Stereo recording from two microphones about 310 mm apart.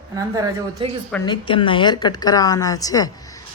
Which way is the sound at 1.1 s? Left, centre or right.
Centre.